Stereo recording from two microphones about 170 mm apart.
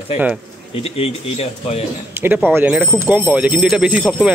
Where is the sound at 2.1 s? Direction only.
10° right (ahead or behind).